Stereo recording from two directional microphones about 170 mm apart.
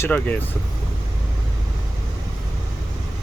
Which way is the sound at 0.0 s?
10° left (ahead or behind).